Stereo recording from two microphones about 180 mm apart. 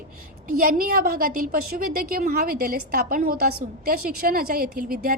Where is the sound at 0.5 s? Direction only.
50° right (ahead or behind).